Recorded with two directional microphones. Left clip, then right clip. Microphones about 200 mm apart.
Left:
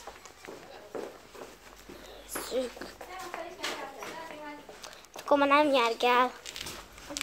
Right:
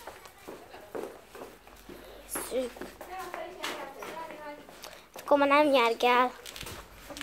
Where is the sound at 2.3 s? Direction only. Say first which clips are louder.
Even; centre (ahead or behind).